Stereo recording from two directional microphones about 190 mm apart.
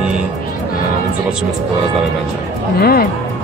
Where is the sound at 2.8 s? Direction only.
55° left (ahead or behind).